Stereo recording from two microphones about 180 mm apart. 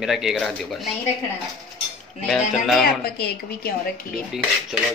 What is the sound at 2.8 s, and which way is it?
Speech, 60° left (ahead or behind).